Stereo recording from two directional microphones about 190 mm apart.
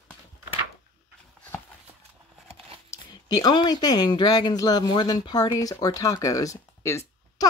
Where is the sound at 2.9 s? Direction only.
20° left (ahead or behind).